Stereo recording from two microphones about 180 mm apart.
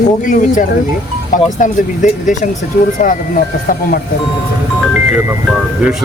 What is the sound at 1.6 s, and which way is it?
Speech, 45° left (ahead or behind).